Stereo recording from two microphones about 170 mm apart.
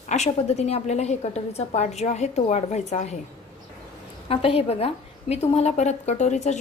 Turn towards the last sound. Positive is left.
turn(degrees=45)  # may be behind; listen again after turning